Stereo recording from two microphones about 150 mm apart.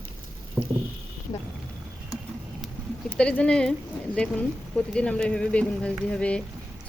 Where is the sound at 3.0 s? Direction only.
5° left (ahead or behind).